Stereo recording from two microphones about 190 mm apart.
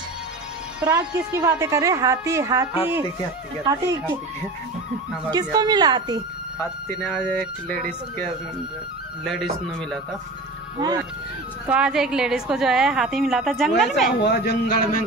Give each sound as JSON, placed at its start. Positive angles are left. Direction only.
{"t": 0.9, "sound": "a woman's voice", "side_deg": -15}
{"t": 5.3, "sound": "speech", "side_deg": -20}
{"t": 6.6, "sound": "speech", "side_deg": 10}
{"t": 9.2, "sound": "a woman's voice", "side_deg": 0}
{"t": 11.6, "sound": "a woman's voice", "side_deg": -5}
{"t": 14.2, "sound": "speech", "side_deg": 60}